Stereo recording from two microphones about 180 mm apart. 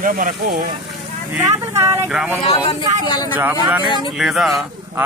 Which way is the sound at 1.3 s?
15° right (ahead or behind).